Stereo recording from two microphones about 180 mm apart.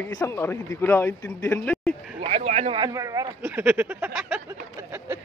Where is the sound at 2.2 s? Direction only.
40° right (ahead or behind).